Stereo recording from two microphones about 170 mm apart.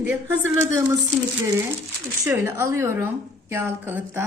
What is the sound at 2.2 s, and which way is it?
A woman's voice, 15° right (ahead or behind).